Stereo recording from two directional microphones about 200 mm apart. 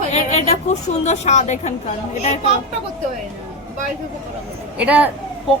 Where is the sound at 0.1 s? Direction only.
35° left (ahead or behind).